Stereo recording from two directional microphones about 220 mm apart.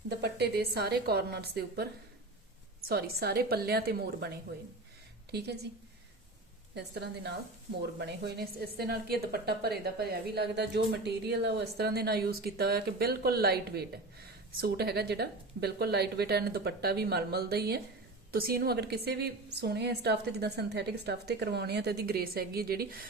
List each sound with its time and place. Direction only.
0.1 s a woman's voice: 50° right (ahead or behind)
2.9 s a woman's voice: 45° right (ahead or behind)
5.3 s a woman's voice: 50° right (ahead or behind)
6.7 s a woman's voice: 50° right (ahead or behind)